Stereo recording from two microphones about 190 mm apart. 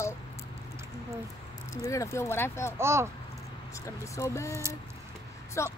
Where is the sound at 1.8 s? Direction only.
15° left (ahead or behind).